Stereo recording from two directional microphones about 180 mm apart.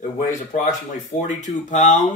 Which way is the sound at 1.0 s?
40° left (ahead or behind).